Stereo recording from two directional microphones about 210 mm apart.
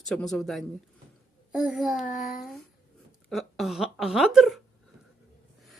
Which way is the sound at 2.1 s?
40° left (ahead or behind).